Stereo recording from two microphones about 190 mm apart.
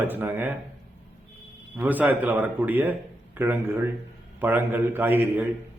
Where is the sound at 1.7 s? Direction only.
10° right (ahead or behind).